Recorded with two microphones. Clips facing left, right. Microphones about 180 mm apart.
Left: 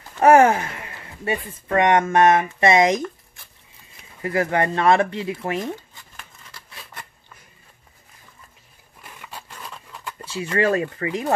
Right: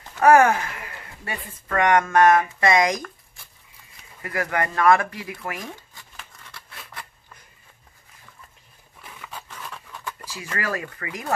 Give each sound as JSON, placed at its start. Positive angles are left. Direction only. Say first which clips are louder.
{"t": 0.2, "sound": "speech", "louder": "left 2 dB", "side_deg": 25}
{"t": 4.2, "sound": "speech", "louder": "left 5 dB", "side_deg": 25}
{"t": 9.0, "sound": "a sound", "louder": "even", "side_deg": 10}
{"t": 10.2, "sound": "speech", "louder": "left 10 dB", "side_deg": 25}